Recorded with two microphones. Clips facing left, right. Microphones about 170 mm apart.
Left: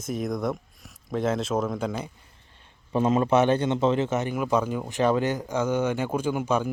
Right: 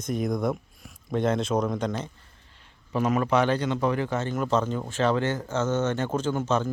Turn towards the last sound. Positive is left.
turn(degrees=10)  # may be behind; listen again after turning